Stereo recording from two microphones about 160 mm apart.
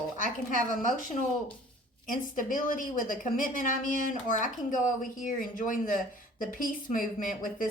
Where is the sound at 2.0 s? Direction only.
55° left (ahead or behind).